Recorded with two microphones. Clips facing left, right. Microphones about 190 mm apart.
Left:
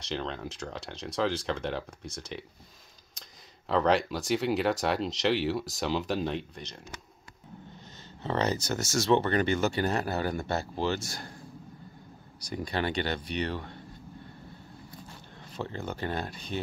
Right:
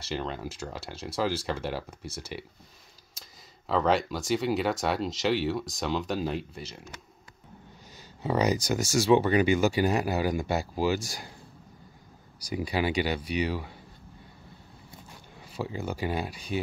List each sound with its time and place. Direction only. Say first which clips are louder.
0.0 s speech: right 1 dB; 5° right (ahead or behind)
8.2 s speech: right 3 dB; 10° right (ahead or behind)
12.4 s speech: right 3 dB; 10° right (ahead or behind)
15.4 s speech: right 2 dB; 10° right (ahead or behind)